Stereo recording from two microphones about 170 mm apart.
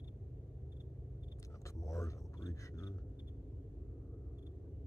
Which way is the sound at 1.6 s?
20° left (ahead or behind).